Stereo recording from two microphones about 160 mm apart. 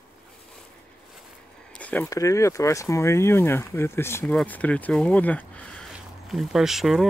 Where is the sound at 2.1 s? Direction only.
20° left (ahead or behind).